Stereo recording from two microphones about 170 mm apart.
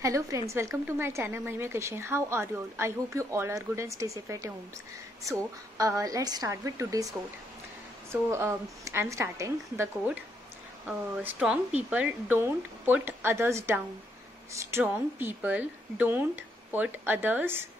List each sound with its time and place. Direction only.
0.0 s a woman's voice: 20° right (ahead or behind)